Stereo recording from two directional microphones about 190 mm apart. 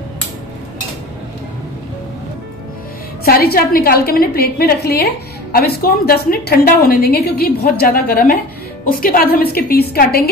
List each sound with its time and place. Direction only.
3.3 s a woman's voice: 55° left (ahead or behind)